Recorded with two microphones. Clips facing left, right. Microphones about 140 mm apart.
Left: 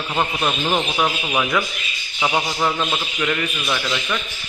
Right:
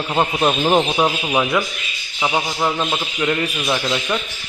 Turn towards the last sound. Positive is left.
turn(degrees=-25)  # may be behind; listen again after turning